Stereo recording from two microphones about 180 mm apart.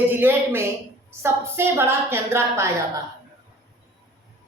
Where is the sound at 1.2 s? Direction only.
15° right (ahead or behind).